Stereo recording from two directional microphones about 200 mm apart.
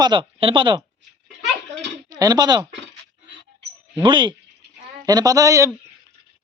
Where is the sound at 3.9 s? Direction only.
25° right (ahead or behind).